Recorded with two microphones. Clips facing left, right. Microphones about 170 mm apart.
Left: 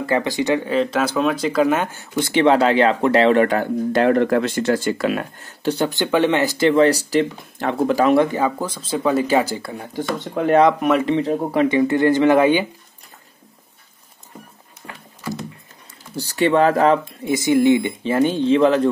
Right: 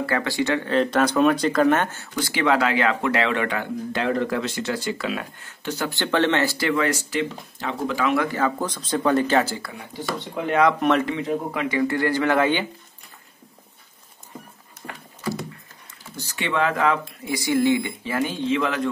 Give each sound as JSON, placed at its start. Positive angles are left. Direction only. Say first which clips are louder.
{"t": 0.0, "sound": "speech", "louder": "left 4 dB", "side_deg": 20}
{"t": 0.7, "sound": "speech", "louder": "even", "side_deg": 0}
{"t": 2.1, "sound": "speech", "louder": "left 6 dB", "side_deg": 25}
{"t": 4.1, "sound": "speech", "louder": "left 7 dB", "side_deg": 60}
{"t": 5.9, "sound": "speech", "louder": "left 1 dB", "side_deg": 15}
{"t": 6.7, "sound": "speech", "louder": "left 8 dB", "side_deg": 30}
{"t": 8.2, "sound": "speech", "louder": "left 5 dB", "side_deg": 20}
{"t": 9.6, "sound": "speech", "louder": "left 6 dB", "side_deg": 35}
{"t": 10.1, "sound": "speech", "louder": "left 8 dB", "side_deg": 45}
{"t": 10.8, "sound": "speech", "louder": "left 2 dB", "side_deg": 10}
{"t": 11.1, "sound": "speech", "louder": "left 6 dB", "side_deg": 35}
{"t": 11.8, "sound": "speech", "louder": "left 4 dB", "side_deg": 20}
{"t": 16.2, "sound": "speech", "louder": "left 8 dB", "side_deg": 35}